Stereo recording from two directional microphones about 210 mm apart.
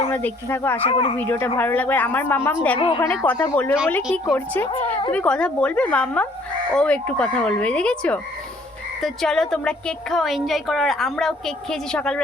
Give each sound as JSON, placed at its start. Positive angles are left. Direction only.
{"t": 0.1, "sound": "a woman's voice", "side_deg": 10}
{"t": 0.8, "sound": "speech", "side_deg": 25}
{"t": 1.1, "sound": "a woman's voice", "side_deg": 10}
{"t": 2.7, "sound": "speech", "side_deg": 25}
{"t": 3.2, "sound": "a woman's voice", "side_deg": 10}